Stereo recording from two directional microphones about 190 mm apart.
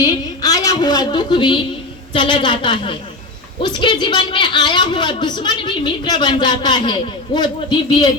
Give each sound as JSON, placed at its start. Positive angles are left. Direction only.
{"t": 0.0, "sound": "a woman's voice", "side_deg": 20}